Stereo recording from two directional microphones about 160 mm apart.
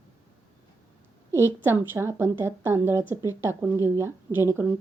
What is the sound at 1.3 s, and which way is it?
Speech, 15° right (ahead or behind).